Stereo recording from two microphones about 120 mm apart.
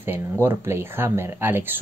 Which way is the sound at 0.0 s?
20° right (ahead or behind).